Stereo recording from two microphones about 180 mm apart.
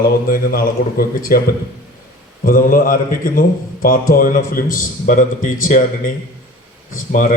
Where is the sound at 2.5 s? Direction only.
50° left (ahead or behind).